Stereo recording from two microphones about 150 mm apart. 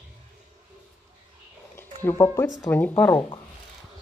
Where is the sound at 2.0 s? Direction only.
15° left (ahead or behind).